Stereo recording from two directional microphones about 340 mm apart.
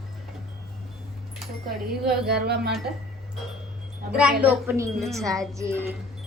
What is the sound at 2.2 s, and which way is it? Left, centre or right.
Speech, right.